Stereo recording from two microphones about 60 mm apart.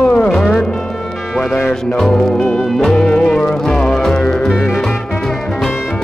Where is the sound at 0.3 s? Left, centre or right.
Centre.